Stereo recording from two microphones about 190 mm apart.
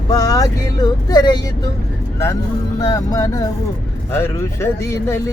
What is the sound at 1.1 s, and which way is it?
Speech, 20° left (ahead or behind).